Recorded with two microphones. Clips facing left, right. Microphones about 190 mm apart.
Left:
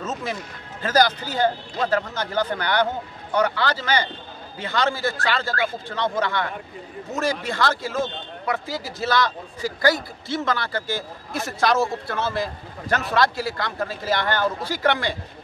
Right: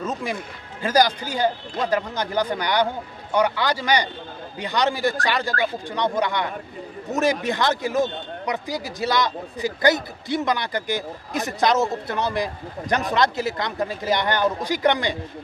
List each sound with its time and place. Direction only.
0.0 s speech: 10° right (ahead or behind)